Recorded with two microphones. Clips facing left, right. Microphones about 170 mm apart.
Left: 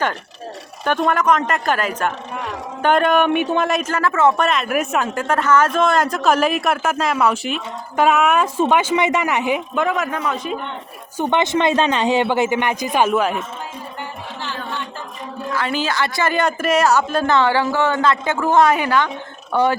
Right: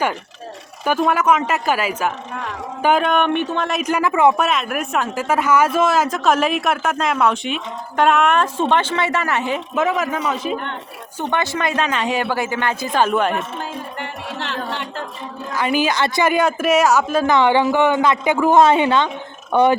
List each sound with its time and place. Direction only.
0.9 s speech: 5° right (ahead or behind); by 3.7 s 10° left (ahead or behind)
3.8 s speech: 15° right (ahead or behind)
4.4 s speech: centre (ahead or behind)
9.7 s speech: centre (ahead or behind)
11.2 s speech: 20° left (ahead or behind)
13.1 s speech: centre (ahead or behind)
14.0 s a sound: 75° right (ahead or behind)
15.5 s speech: 15° right (ahead or behind)